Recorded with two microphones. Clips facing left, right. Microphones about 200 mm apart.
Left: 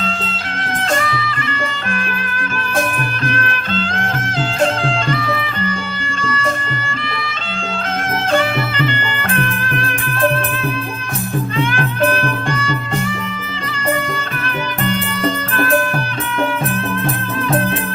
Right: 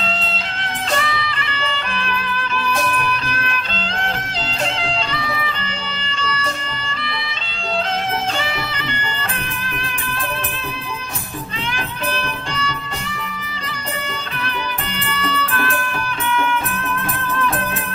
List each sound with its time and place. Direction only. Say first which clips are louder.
0.9 s music: left 2 dB; 45° left (ahead or behind)
6.1 s music: left 4 dB; 50° left (ahead or behind)
9.1 s music: left 8 dB; 55° left (ahead or behind)
11.7 s music: left 6 dB; 55° left (ahead or behind)
15.1 s music: left 4 dB; 45° left (ahead or behind)